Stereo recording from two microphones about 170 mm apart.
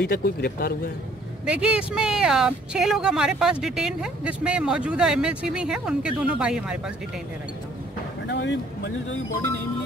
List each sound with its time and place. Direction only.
0.0 s speech: 65° left (ahead or behind)
1.4 s speech: 5° right (ahead or behind)
8.3 s speech: 90° left